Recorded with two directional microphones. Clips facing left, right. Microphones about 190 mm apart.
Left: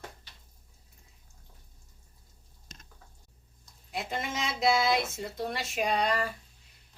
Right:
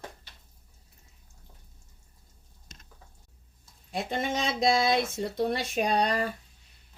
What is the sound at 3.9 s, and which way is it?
Speech, 30° right (ahead or behind).